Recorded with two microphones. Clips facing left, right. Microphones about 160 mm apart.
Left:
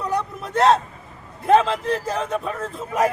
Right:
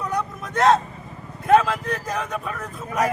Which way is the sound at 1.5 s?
25° left (ahead or behind).